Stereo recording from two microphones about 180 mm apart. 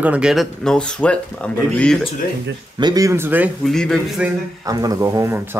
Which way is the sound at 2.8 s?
20° right (ahead or behind).